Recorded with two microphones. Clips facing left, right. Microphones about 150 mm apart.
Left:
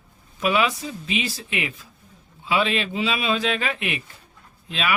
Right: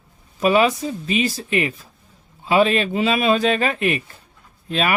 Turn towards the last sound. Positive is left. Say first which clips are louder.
# right 6 dB
turn(degrees=-45)  # may be behind; listen again after turning